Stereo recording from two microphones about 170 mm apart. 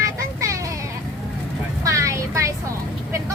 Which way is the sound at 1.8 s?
20° right (ahead or behind).